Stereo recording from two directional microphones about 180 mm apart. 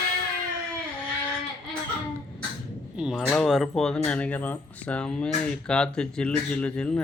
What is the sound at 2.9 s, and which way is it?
Speech, centre (ahead or behind).